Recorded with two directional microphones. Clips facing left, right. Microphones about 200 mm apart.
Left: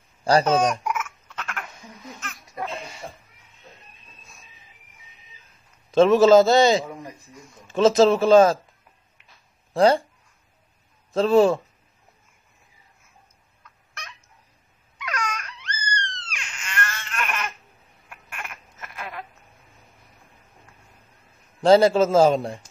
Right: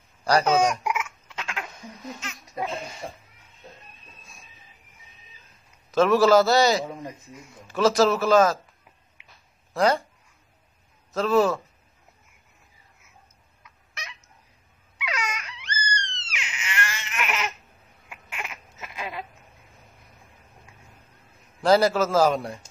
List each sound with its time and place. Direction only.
0.2 s a sound: 30° left (ahead or behind)
0.6 s a sound: 10° right (ahead or behind)
5.9 s speech: 25° left (ahead or behind)
6.8 s speech: 20° right (ahead or behind)
7.6 s speech: 25° left (ahead or behind)
9.8 s speech: 30° left (ahead or behind)
11.1 s speech: 30° left (ahead or behind)
13.6 s fowl: 10° right (ahead or behind)
15.0 s a sound: 10° right (ahead or behind)
18.1 s duck: 10° right (ahead or behind)
21.6 s speech: 25° left (ahead or behind)